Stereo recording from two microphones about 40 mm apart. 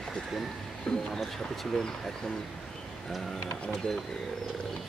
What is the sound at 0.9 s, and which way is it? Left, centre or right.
Speech, left.